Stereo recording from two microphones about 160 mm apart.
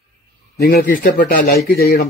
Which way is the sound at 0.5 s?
75° left (ahead or behind).